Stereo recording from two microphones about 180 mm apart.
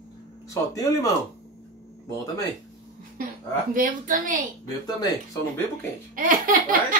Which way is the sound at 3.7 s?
50° right (ahead or behind).